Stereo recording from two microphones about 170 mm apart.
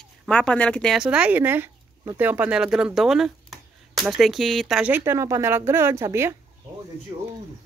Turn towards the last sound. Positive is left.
turn(degrees=-20)  # may be behind; listen again after turning